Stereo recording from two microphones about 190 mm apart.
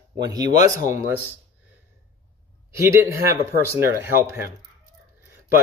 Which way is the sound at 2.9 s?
15° right (ahead or behind).